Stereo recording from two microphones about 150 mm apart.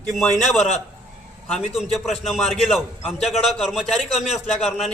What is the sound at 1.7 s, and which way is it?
A man's voice, centre (ahead or behind).